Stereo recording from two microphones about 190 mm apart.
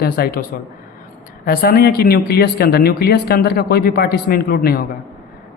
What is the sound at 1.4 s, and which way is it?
Speech, 50° left (ahead or behind).